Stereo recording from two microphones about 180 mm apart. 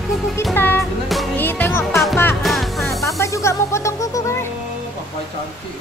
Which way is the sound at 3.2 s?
15° left (ahead or behind).